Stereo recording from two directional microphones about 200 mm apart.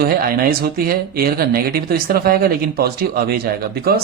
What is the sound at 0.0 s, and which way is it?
Speech, 50° right (ahead or behind).